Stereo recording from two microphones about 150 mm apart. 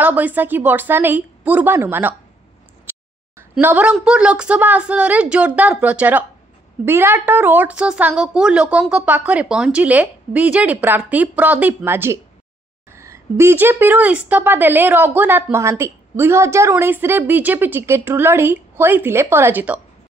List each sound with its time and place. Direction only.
0.0 s a woman's voice: 10° right (ahead or behind)
3.5 s a woman's voice: 10° right (ahead or behind)